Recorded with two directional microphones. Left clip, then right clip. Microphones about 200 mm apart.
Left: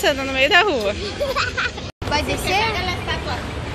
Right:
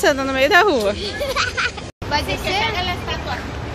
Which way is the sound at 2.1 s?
50° left (ahead or behind).